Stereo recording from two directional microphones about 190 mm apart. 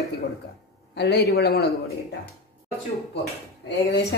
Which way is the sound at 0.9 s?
60° left (ahead or behind).